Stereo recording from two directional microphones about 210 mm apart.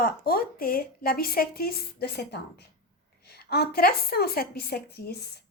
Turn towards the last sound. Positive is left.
turn(degrees=50)  # may be behind; listen again after turning